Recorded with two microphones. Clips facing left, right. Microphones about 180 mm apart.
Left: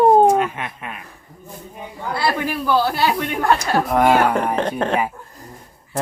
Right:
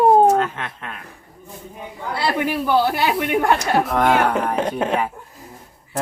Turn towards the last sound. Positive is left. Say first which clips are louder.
# even
turn(degrees=-5)  # may be behind; listen again after turning